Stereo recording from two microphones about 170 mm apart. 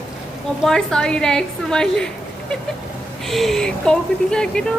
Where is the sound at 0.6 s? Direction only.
5° left (ahead or behind).